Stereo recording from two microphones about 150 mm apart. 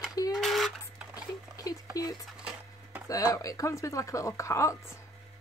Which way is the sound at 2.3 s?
5° right (ahead or behind).